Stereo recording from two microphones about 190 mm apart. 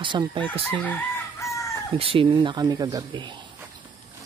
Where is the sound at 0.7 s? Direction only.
10° left (ahead or behind).